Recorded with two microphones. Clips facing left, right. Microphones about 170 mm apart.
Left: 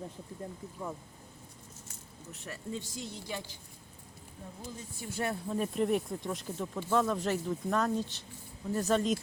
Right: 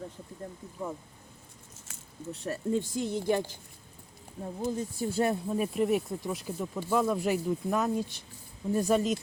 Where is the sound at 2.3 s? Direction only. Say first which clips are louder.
Right 10 dB; 35° right (ahead or behind).